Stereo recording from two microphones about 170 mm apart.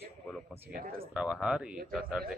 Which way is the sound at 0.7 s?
55° right (ahead or behind).